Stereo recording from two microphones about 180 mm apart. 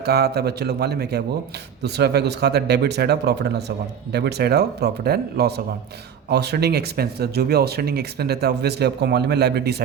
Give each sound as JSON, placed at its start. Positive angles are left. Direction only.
{"t": 0.0, "sound": "speech", "side_deg": -60}